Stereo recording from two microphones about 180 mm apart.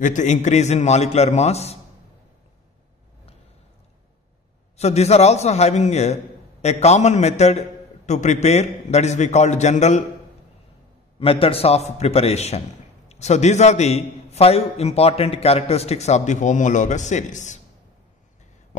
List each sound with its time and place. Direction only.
0.0 s a man's voice: 45° left (ahead or behind)
4.7 s a man's voice: 35° left (ahead or behind)
11.1 s a man's voice: 30° left (ahead or behind)